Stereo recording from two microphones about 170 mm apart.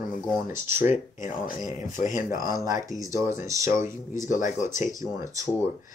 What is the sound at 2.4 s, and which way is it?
Speech, 20° right (ahead or behind).